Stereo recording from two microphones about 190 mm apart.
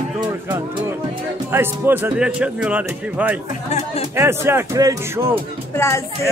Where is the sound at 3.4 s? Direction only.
35° left (ahead or behind).